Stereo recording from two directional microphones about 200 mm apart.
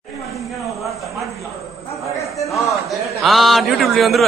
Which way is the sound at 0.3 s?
Centre (ahead or behind).